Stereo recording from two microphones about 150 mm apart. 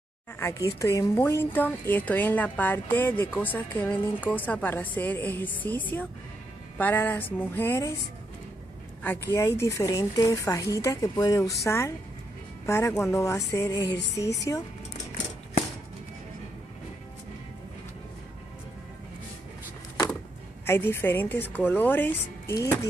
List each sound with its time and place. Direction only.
0.4 s a woman's voice: 20° left (ahead or behind)
9.3 s speech: 20° left (ahead or behind)
20.6 s a woman's voice: 15° left (ahead or behind)
22.5 s speech: 25° left (ahead or behind)